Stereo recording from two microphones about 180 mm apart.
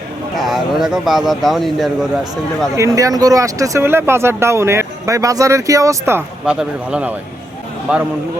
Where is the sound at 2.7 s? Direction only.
15° right (ahead or behind).